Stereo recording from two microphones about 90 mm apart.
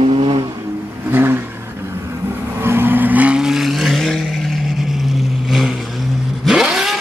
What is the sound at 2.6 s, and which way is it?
Vehicle, 25° right (ahead or behind).